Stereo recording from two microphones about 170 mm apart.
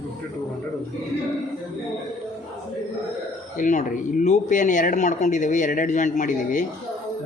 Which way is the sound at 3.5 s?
50° left (ahead or behind).